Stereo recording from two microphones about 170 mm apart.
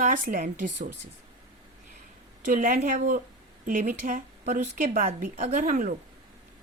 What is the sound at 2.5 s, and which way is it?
Speech, 50° right (ahead or behind).